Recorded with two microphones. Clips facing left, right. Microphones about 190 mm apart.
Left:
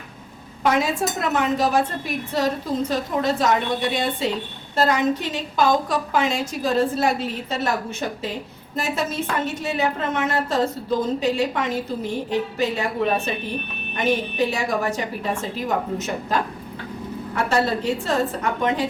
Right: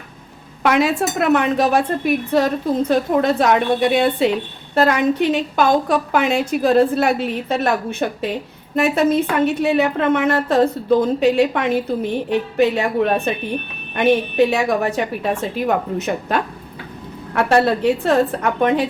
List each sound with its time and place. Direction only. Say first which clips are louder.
0.6 s a woman's voice: right 4 dB; 70° right (ahead or behind)
13.9 s a woman's voice: right 7 dB; 60° right (ahead or behind)